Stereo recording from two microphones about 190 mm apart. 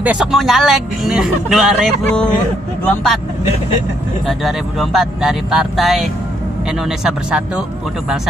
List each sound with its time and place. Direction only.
0.0 s speech: 5° right (ahead or behind)
4.3 s speech: centre (ahead or behind)